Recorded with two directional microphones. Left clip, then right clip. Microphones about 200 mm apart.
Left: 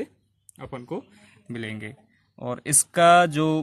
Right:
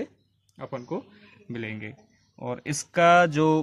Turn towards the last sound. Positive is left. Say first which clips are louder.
# left 1 dB
turn(degrees=25)  # may be behind; listen again after turning